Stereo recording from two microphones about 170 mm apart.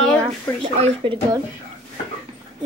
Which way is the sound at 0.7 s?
40° right (ahead or behind).